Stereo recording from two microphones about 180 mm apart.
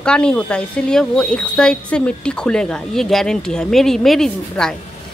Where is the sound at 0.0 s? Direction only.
5° left (ahead or behind).